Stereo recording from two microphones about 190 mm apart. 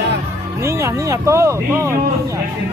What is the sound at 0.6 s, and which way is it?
Speech, 15° right (ahead or behind).